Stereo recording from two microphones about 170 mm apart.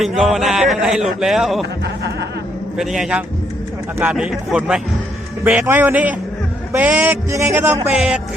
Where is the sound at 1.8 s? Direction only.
85° right.